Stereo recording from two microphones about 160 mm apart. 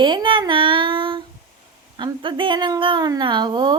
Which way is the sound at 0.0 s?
30° right (ahead or behind).